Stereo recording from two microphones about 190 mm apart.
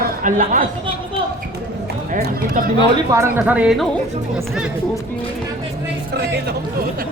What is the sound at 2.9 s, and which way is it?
Speech, 20° right (ahead or behind).